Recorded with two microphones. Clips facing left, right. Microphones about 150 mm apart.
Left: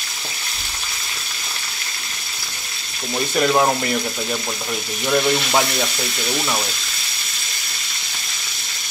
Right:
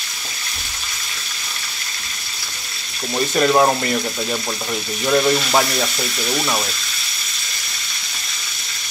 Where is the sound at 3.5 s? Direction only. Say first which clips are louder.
Right 2 dB; 5° right (ahead or behind).